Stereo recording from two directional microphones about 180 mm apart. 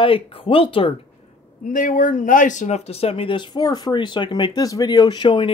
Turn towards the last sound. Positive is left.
turn(degrees=25)  # may be behind; listen again after turning